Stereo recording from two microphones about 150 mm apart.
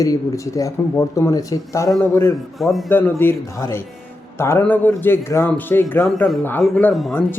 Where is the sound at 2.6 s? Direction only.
Centre (ahead or behind).